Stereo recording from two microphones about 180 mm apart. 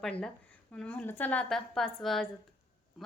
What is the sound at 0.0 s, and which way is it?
A woman's voice, 5° left (ahead or behind).